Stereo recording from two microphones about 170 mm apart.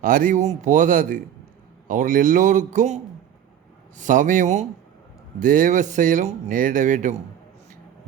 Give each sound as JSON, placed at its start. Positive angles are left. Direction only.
{"t": 0.0, "sound": "speech", "side_deg": -55}